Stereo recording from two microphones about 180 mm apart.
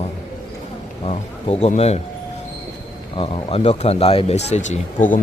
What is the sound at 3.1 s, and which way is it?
Speech, 30° left (ahead or behind).